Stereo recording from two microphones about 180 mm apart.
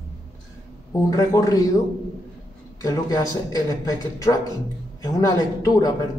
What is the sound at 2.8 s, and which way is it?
Speech, 20° left (ahead or behind).